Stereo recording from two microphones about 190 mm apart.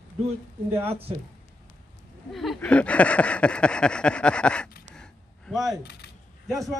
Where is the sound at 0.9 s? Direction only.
30° right (ahead or behind).